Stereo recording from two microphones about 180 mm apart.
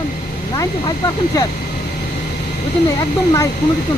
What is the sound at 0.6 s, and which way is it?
Speech, 20° left (ahead or behind).